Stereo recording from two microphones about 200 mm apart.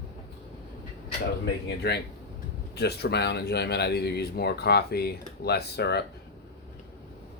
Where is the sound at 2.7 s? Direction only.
55° left (ahead or behind).